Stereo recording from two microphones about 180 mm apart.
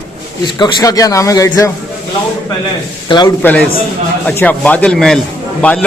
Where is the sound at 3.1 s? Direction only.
25° left (ahead or behind).